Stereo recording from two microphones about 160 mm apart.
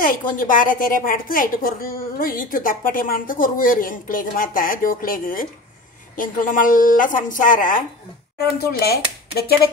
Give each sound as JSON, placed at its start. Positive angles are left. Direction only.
{"t": 0.0, "sound": "a woman's voice", "side_deg": 60}
{"t": 8.7, "sound": "speech", "side_deg": 80}